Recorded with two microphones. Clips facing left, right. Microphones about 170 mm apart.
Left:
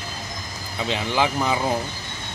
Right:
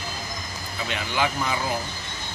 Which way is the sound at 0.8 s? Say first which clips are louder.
Left 4 dB; 30° left (ahead or behind).